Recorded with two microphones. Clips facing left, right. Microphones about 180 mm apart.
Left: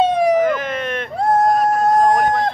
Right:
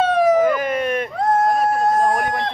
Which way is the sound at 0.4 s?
10° right (ahead or behind).